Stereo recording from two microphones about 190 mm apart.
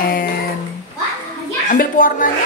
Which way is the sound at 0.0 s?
50° left (ahead or behind).